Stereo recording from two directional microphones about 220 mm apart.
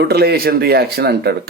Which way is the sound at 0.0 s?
45° right (ahead or behind).